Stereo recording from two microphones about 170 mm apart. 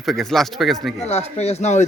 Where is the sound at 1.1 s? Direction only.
40° left (ahead or behind).